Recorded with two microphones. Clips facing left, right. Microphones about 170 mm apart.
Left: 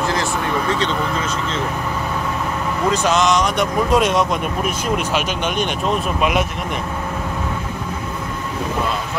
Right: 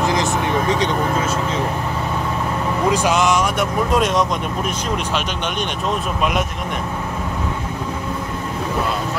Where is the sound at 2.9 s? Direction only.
10° right (ahead or behind).